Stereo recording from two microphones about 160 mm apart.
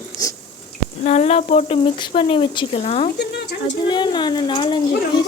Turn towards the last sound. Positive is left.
turn(degrees=30)  # may be behind; listen again after turning